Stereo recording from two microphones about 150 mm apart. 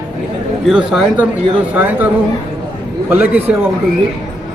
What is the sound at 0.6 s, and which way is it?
A man's voice, 5° right (ahead or behind).